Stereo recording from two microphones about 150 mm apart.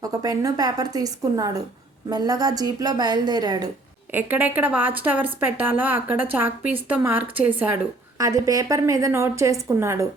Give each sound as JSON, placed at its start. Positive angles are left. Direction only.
{"t": 0.0, "sound": "a woman's voice", "side_deg": -25}
{"t": 4.1, "sound": "speech", "side_deg": -10}
{"t": 8.2, "sound": "a woman's voice", "side_deg": -20}